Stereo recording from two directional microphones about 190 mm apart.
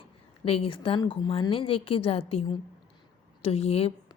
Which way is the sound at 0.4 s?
30° left (ahead or behind).